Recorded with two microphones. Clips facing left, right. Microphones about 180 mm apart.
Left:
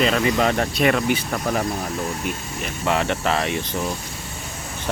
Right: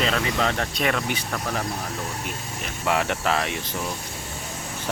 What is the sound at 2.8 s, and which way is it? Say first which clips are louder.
Speech: left 2 dB; 5° right (ahead or behind).